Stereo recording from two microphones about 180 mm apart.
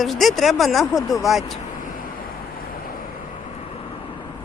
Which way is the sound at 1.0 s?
15° left (ahead or behind).